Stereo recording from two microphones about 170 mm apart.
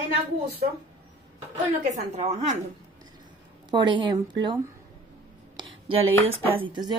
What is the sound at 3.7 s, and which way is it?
Speech, 25° right (ahead or behind).